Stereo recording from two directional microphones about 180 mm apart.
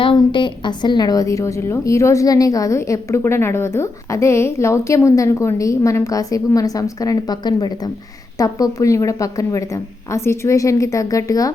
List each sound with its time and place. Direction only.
0.0 s a woman's voice: 25° left (ahead or behind)